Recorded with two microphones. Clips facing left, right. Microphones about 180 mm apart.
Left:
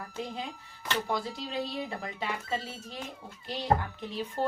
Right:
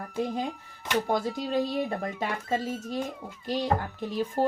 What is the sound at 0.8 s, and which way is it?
Speech, 15° right (ahead or behind).